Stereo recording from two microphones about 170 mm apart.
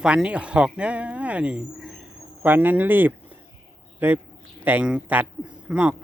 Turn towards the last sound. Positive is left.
turn(degrees=-10)  # may be behind; listen again after turning